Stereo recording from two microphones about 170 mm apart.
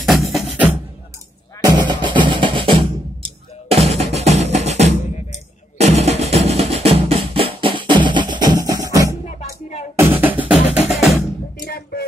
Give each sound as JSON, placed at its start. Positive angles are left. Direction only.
{"t": 0.0, "sound": "music", "side_deg": 0}
{"t": 1.6, "sound": "drum", "side_deg": -25}
{"t": 9.9, "sound": "music", "side_deg": -10}
{"t": 11.6, "sound": "music", "side_deg": 65}